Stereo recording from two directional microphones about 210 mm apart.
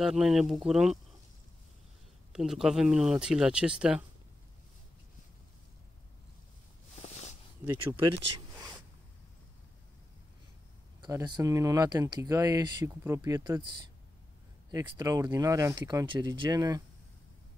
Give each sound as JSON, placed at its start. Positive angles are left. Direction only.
{"t": 0.0, "sound": "speech", "side_deg": -5}
{"t": 2.3, "sound": "speech", "side_deg": 0}
{"t": 7.0, "sound": "a sound", "side_deg": 30}
{"t": 7.6, "sound": "speech", "side_deg": -10}
{"t": 11.0, "sound": "speech", "side_deg": -15}